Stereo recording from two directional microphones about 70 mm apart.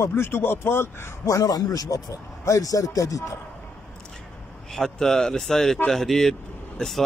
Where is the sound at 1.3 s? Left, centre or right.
Left.